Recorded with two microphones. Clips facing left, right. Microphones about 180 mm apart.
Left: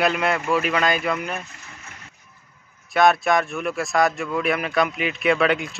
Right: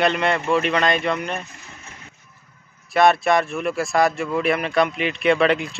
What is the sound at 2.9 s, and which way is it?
Speech, centre (ahead or behind).